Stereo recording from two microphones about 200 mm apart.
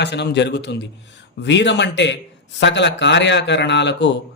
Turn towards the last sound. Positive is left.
turn(degrees=60)  # may be behind; listen again after turning